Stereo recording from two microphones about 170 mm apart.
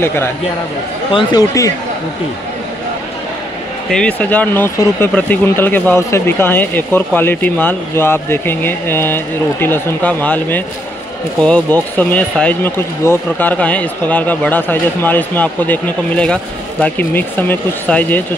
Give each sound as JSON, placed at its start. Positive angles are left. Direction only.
{"t": 0.0, "sound": "a man's voice", "side_deg": 15}
{"t": 3.9, "sound": "speech", "side_deg": 5}